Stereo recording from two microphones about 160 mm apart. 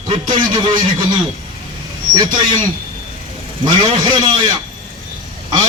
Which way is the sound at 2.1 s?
25° right (ahead or behind).